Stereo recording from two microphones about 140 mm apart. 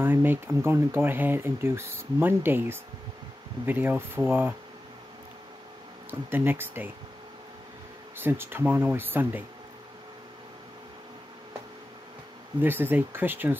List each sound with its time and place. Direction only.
0.0 s speech: 15° right (ahead or behind)
6.0 s speech: 15° right (ahead or behind)
8.2 s speech: 15° right (ahead or behind)
12.6 s speech: 15° right (ahead or behind)